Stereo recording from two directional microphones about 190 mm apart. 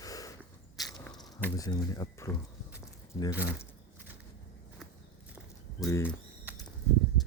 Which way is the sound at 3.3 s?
55° left (ahead or behind).